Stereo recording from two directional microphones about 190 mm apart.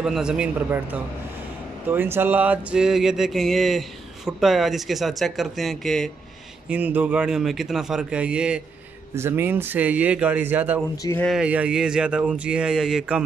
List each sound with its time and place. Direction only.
0.0 s speech: 5° right (ahead or behind)
1.9 s speech: 10° right (ahead or behind)